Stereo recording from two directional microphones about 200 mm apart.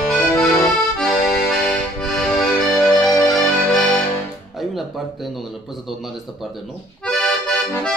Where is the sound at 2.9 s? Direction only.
15° left (ahead or behind).